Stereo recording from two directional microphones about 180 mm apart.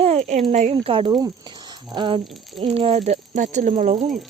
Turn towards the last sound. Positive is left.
turn(degrees=-40)  # may be behind; listen again after turning